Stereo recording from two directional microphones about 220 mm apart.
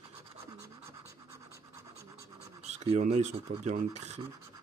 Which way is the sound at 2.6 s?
30° right (ahead or behind).